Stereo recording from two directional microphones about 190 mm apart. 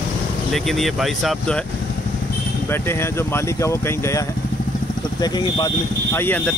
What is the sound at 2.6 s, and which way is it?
Speech, 10° left (ahead or behind).